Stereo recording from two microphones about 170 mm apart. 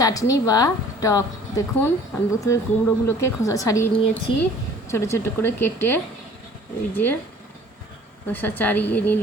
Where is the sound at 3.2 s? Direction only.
20° left (ahead or behind).